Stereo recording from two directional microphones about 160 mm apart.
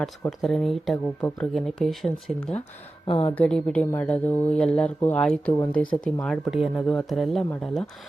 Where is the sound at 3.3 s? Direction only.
5° left (ahead or behind).